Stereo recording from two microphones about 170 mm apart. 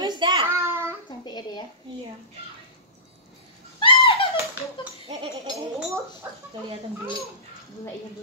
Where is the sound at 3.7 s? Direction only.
30° left (ahead or behind).